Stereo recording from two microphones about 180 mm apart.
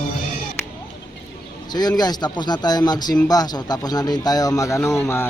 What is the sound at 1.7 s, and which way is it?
A man's voice, 20° left (ahead or behind).